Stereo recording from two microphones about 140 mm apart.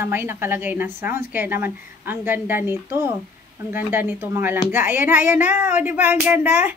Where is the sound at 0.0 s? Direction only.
15° right (ahead or behind).